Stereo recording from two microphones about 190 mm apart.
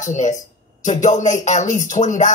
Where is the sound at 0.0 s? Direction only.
40° left (ahead or behind).